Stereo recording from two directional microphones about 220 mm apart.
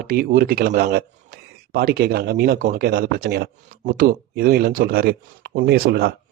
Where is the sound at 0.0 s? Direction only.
40° right (ahead or behind).